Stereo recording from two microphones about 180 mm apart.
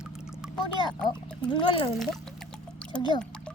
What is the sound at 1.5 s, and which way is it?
Speech, 25° left (ahead or behind).